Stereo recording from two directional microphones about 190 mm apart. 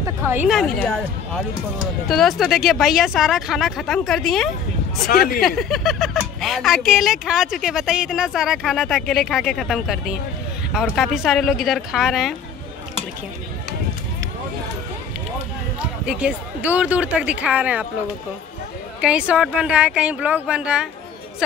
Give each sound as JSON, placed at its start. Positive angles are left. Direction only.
{"t": 0.0, "sound": "a sound", "side_deg": -10}
{"t": 0.5, "sound": "speech", "side_deg": 0}
{"t": 5.0, "sound": "speech", "side_deg": 55}
{"t": 5.6, "sound": "speech", "side_deg": 0}
{"t": 16.1, "sound": "speech", "side_deg": -5}
{"t": 18.9, "sound": "speech", "side_deg": -5}